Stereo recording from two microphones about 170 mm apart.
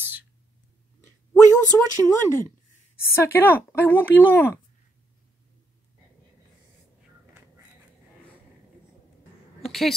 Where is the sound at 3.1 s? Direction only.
15° left (ahead or behind).